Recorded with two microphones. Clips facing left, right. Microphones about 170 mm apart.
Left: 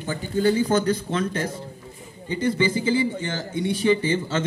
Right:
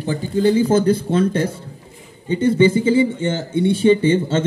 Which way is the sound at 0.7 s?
30° right (ahead or behind).